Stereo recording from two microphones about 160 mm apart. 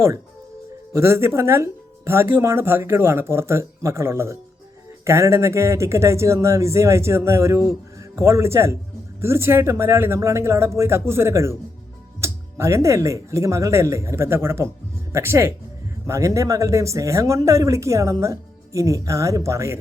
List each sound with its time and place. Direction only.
0.9 s a man's voice: 15° right (ahead or behind)